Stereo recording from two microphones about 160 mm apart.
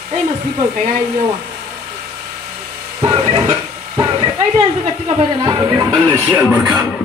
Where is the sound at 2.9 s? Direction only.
20° right (ahead or behind).